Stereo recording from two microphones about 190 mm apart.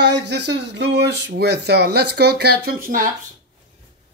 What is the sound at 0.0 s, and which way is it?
Speech, 65° right (ahead or behind).